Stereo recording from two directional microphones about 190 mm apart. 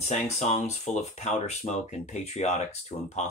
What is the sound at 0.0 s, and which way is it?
Speech, 35° left (ahead or behind).